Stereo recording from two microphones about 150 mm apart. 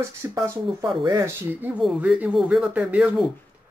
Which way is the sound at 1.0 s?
30° right (ahead or behind).